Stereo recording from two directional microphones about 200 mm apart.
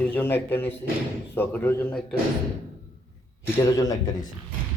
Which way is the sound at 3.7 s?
15° left (ahead or behind).